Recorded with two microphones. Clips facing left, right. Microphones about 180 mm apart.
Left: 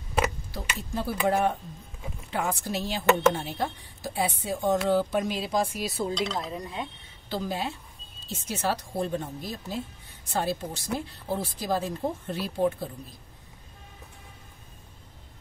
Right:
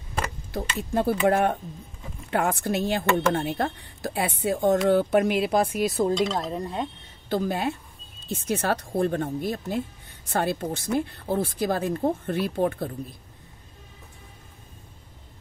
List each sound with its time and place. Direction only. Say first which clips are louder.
0.9 s speech: right 5 dB; 55° right (ahead or behind)